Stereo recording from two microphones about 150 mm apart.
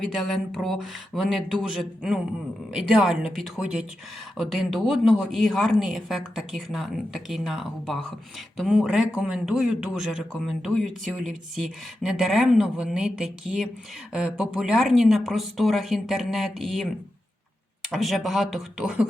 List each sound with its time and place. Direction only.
0.0 s a man's voice: centre (ahead or behind)